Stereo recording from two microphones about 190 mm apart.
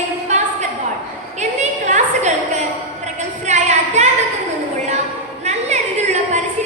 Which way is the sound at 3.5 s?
35° right (ahead or behind).